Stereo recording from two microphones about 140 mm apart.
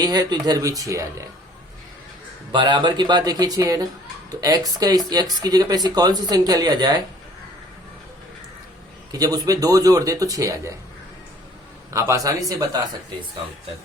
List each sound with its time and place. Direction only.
0.0 s speech: 30° right (ahead or behind)
2.5 s speech: 35° right (ahead or behind)
9.1 s speech: 25° right (ahead or behind)
11.9 s speech: 25° right (ahead or behind)